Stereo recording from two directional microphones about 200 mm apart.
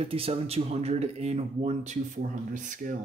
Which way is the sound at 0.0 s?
30° right (ahead or behind).